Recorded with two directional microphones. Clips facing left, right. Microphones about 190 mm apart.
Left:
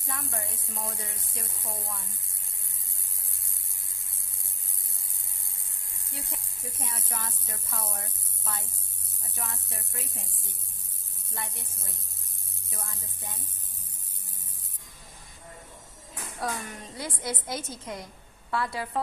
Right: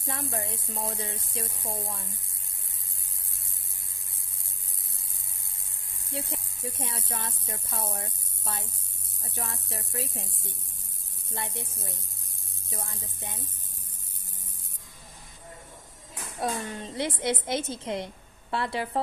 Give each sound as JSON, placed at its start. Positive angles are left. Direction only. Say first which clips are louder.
{"t": 0.1, "sound": "speech", "louder": "right 4 dB", "side_deg": -30}
{"t": 6.8, "sound": "a woman's voice", "louder": "left 1 dB", "side_deg": -25}
{"t": 11.3, "sound": "a woman's voice", "louder": "right 4 dB", "side_deg": -25}
{"t": 16.3, "sound": "a woman's voice", "louder": "right 3 dB", "side_deg": -25}